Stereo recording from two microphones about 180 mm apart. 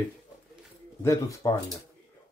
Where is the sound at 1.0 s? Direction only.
15° left (ahead or behind).